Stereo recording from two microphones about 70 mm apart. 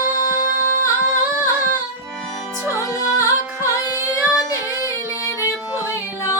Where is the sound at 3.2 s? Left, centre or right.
Left.